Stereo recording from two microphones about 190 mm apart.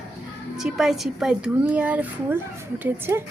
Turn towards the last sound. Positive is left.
turn(degrees=-10)  # may be behind; listen again after turning